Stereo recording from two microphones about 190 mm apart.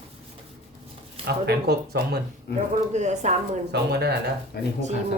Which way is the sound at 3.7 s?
60° right (ahead or behind).